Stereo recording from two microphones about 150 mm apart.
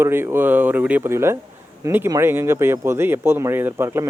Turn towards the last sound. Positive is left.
turn(degrees=-15)  # may be behind; listen again after turning